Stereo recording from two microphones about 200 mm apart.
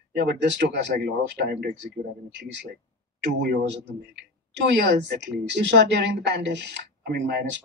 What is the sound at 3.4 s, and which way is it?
Speech, 55° right (ahead or behind).